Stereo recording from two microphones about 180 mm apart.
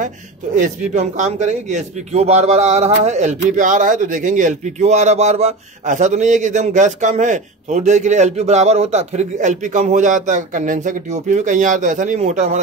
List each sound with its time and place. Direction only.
0.6 s a man's voice: 40° right (ahead or behind)